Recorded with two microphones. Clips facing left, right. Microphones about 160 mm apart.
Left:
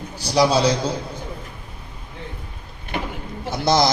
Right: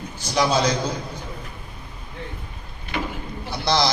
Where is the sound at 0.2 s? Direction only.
35° left (ahead or behind).